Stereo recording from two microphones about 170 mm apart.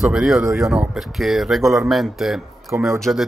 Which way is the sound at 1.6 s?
15° right (ahead or behind).